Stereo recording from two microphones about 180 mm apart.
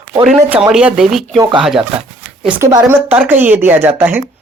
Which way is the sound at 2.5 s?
10° right (ahead or behind).